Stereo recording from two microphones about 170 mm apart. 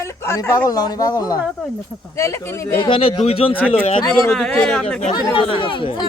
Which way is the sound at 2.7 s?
30° left (ahead or behind).